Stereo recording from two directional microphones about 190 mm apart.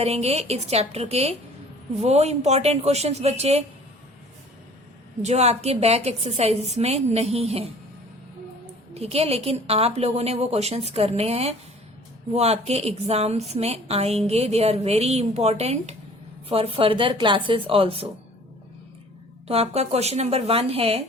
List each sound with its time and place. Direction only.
0.0 s a woman's voice: 35° right (ahead or behind)
5.2 s a woman's voice: 35° right (ahead or behind)
9.0 s a woman's voice: 30° right (ahead or behind)
19.5 s a woman's voice: 35° right (ahead or behind)